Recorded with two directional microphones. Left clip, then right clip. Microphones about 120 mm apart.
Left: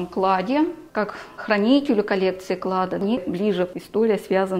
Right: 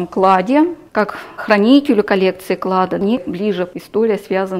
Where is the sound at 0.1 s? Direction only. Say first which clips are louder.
Right 8 dB; 55° right (ahead or behind).